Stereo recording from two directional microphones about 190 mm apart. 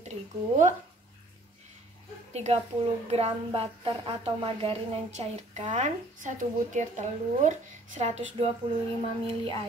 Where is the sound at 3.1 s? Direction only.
30° right (ahead or behind).